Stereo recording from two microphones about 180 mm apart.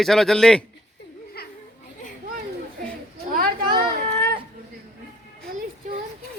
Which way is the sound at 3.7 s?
55° right (ahead or behind).